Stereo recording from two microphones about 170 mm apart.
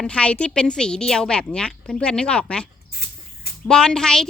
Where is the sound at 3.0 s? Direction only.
65° left (ahead or behind).